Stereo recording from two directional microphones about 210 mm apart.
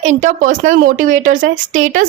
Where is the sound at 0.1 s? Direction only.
35° right (ahead or behind).